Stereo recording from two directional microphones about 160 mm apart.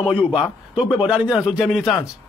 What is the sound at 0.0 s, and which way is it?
A man's voice, 5° right (ahead or behind).